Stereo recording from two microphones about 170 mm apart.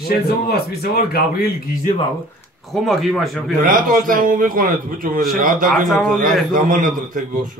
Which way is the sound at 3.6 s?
50° right (ahead or behind).